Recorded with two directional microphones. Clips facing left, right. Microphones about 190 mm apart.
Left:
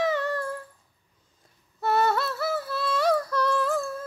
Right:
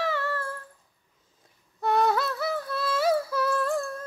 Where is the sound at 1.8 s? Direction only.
5° left (ahead or behind).